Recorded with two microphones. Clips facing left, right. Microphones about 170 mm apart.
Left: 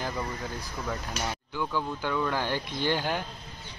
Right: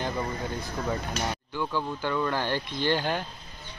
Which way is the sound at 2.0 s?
5° left (ahead or behind).